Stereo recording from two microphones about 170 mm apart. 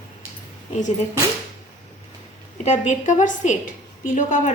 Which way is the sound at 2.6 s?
45° left (ahead or behind).